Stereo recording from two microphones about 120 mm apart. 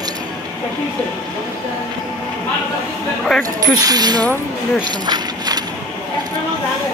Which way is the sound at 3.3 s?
Centre (ahead or behind).